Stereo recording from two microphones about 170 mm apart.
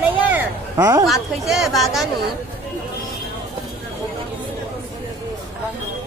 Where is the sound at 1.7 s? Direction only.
Centre (ahead or behind).